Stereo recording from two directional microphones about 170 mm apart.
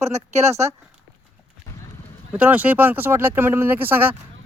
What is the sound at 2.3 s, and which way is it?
Speech, 10° right (ahead or behind).